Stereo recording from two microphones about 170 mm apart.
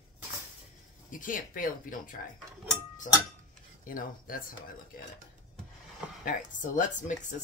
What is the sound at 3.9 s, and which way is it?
Speech, 55° left (ahead or behind).